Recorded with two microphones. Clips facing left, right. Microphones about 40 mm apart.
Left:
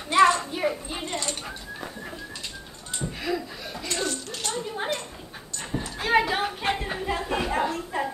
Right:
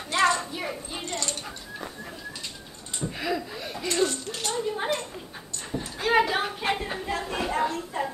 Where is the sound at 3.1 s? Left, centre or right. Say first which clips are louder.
Even; centre.